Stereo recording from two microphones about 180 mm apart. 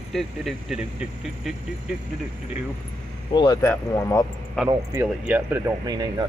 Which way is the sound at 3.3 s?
25° left (ahead or behind).